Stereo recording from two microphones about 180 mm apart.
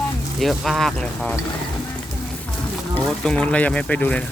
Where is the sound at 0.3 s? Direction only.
Centre (ahead or behind).